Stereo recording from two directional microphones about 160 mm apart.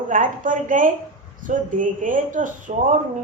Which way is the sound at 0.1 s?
55° right (ahead or behind).